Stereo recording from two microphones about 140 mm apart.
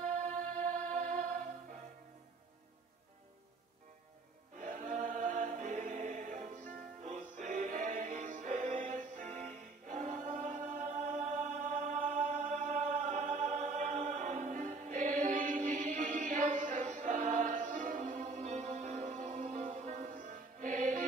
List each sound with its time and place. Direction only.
0.0 s music: 65° right (ahead or behind)
4.6 s choir: 65° right (ahead or behind)
7.0 s music: 55° right (ahead or behind)